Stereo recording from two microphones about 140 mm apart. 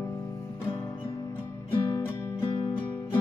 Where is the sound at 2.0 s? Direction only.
15° left (ahead or behind).